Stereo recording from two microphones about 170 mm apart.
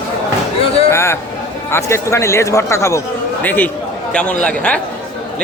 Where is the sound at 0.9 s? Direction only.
15° left (ahead or behind).